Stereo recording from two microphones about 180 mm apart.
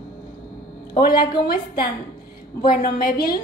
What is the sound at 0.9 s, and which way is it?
Speech, 55° left (ahead or behind).